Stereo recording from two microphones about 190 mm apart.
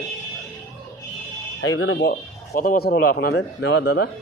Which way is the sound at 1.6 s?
85° left.